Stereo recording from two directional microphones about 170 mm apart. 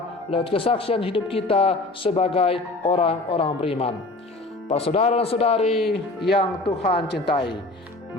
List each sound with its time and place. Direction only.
0.3 s speech: 30° left (ahead or behind)
5.7 s speech: centre (ahead or behind)
6.3 s speech: 35° left (ahead or behind)